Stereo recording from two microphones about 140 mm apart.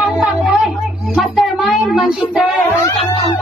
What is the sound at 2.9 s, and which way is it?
Music, 45° left (ahead or behind).